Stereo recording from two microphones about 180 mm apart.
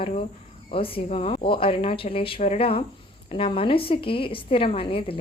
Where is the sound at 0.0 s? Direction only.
35° left (ahead or behind).